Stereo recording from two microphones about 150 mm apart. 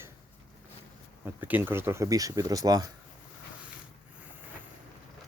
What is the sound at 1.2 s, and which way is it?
Speech, 10° right (ahead or behind).